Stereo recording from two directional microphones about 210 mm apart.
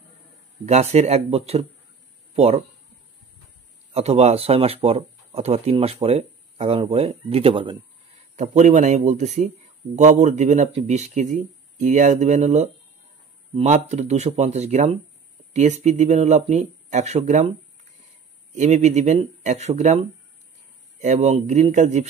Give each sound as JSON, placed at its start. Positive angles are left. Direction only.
{"t": 0.7, "sound": "speech", "side_deg": -30}
{"t": 3.9, "sound": "speech", "side_deg": -30}
{"t": 8.4, "sound": "speech", "side_deg": -35}
{"t": 18.5, "sound": "speech", "side_deg": -35}